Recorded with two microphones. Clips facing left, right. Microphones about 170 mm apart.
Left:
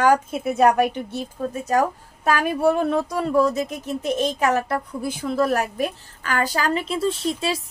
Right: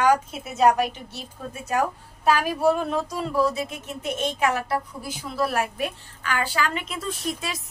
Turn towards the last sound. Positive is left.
turn(degrees=30)  # may be behind; listen again after turning